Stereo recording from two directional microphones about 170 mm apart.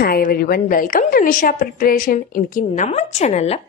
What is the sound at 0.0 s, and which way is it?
A woman's voice, 60° left (ahead or behind).